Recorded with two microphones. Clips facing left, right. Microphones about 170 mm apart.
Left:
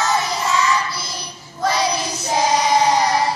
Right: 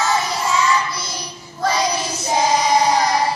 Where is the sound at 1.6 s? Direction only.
Centre (ahead or behind).